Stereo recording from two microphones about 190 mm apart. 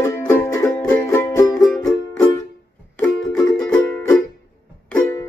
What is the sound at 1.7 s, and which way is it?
Music, 5° left (ahead or behind).